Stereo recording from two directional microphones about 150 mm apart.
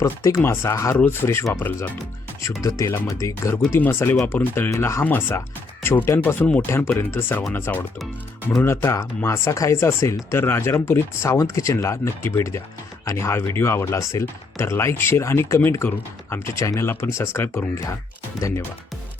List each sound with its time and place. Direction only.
0.0 s speech: 20° left (ahead or behind)
2.6 s speech: 20° left (ahead or behind)